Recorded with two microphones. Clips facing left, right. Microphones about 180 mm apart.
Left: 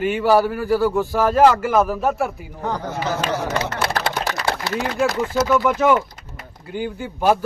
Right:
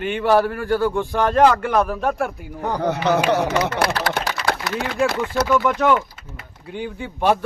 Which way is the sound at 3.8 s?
25° left (ahead or behind).